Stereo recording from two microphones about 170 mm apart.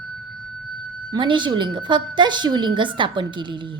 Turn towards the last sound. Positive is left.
turn(degrees=-30)  # may be behind; listen again after turning